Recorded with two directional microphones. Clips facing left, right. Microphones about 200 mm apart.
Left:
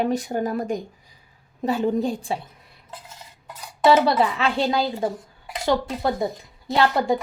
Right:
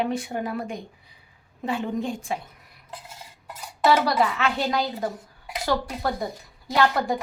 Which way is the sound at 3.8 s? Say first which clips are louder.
Left 3 dB; 25° left (ahead or behind).